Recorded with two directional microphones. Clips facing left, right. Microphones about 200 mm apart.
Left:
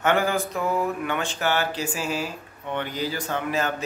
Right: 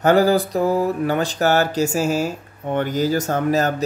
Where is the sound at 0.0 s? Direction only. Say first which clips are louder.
Right 8 dB; 35° right (ahead or behind).